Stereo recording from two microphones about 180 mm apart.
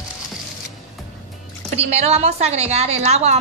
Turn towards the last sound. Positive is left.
turn(degrees=-35)  # may be behind; listen again after turning